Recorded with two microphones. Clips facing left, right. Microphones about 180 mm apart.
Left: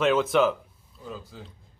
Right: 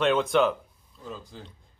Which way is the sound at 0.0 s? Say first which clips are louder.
Left 1 dB; 5° left (ahead or behind).